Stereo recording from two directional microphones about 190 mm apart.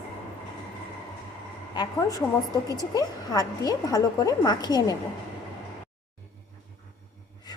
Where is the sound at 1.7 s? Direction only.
20° left (ahead or behind).